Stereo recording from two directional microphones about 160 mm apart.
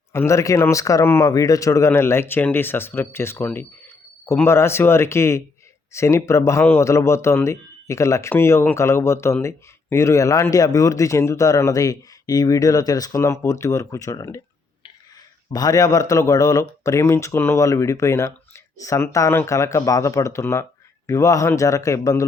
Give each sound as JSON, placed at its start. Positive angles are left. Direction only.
{"t": 0.1, "sound": "speech", "side_deg": 15}
{"t": 15.5, "sound": "speech", "side_deg": 20}